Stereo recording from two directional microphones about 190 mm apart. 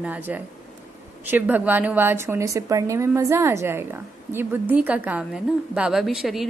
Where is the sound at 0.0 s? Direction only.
10° right (ahead or behind).